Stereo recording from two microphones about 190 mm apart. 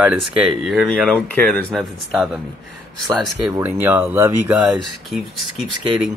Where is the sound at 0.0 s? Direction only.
5° right (ahead or behind).